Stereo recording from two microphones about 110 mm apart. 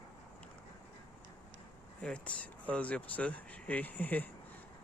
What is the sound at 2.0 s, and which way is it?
Speech, 10° left (ahead or behind).